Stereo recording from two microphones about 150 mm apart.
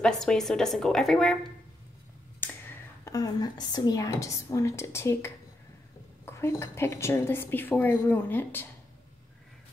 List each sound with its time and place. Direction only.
0.0 s a woman's voice: 5° left (ahead or behind)
2.4 s a sound: 15° left (ahead or behind)
3.1 s a woman's voice: 25° left (ahead or behind)